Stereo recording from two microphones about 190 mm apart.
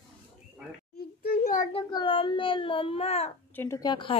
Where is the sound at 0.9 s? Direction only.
55° left (ahead or behind).